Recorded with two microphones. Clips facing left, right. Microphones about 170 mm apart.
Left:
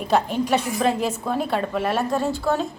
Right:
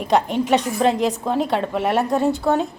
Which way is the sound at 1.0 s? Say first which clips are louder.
Right 4 dB; 15° right (ahead or behind).